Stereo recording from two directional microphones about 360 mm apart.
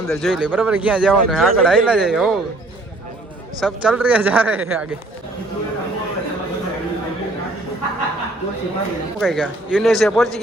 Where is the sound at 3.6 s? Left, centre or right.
Centre.